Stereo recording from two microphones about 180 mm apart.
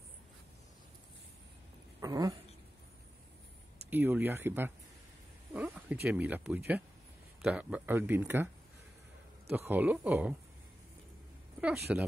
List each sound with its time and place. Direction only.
2.0 s a sound: 20° right (ahead or behind)
3.9 s speech: 10° right (ahead or behind)
5.5 s cat: 10° right (ahead or behind)
6.0 s speech: 10° right (ahead or behind)
9.5 s speech: 10° right (ahead or behind)
11.9 s speech: 5° right (ahead or behind)